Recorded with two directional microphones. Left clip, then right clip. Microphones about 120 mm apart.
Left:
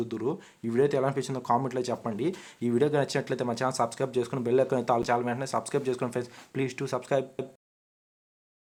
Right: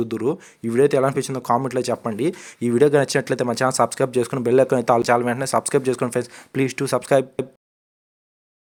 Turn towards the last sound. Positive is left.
turn(degrees=-55)  # may be behind; listen again after turning